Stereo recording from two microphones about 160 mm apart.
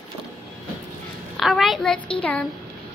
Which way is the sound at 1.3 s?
Centre (ahead or behind).